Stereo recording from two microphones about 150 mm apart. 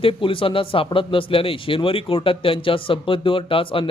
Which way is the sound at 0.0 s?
35° left (ahead or behind).